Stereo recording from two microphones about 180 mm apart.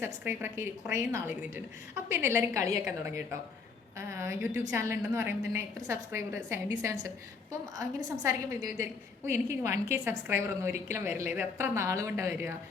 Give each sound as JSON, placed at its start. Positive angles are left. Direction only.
{"t": 0.0, "sound": "a woman's voice", "side_deg": -10}